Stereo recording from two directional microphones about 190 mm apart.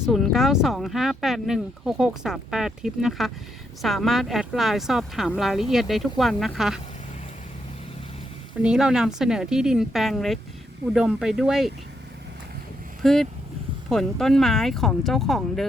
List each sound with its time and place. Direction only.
0.0 s speech: centre (ahead or behind)
8.6 s speech: 5° right (ahead or behind)
13.0 s speech: centre (ahead or behind)